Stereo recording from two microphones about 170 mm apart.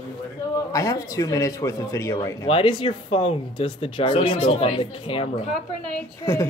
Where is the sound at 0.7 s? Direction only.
20° left (ahead or behind).